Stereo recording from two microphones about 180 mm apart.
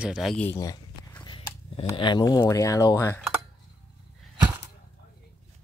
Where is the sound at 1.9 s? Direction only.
25° left (ahead or behind).